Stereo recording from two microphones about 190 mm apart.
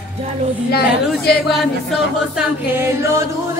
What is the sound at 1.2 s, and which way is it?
Speech, 55° left (ahead or behind).